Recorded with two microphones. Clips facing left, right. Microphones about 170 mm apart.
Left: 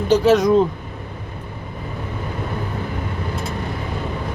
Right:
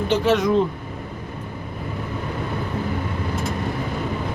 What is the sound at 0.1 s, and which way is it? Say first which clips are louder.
Speech: left 5 dB; 40° left (ahead or behind).